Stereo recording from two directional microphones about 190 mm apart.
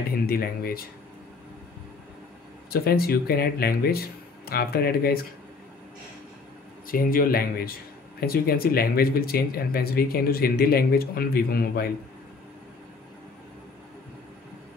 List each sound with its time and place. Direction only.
0.1 s speech: 50° left (ahead or behind)
2.7 s speech: 55° left (ahead or behind)
6.9 s speech: 50° left (ahead or behind)